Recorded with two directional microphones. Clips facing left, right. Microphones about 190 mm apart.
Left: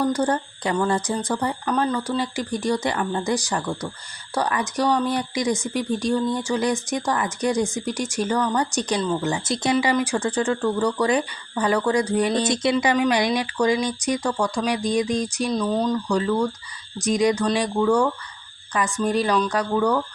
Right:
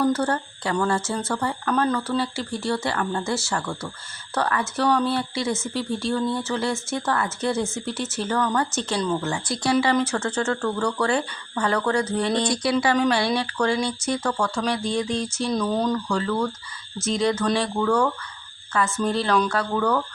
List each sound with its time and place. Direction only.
0.0 s speech: 15° left (ahead or behind)
9.0 s speech: 5° left (ahead or behind)
9.2 s speech: 20° left (ahead or behind)
15.5 s speech: centre (ahead or behind)
15.9 s speech: 15° left (ahead or behind)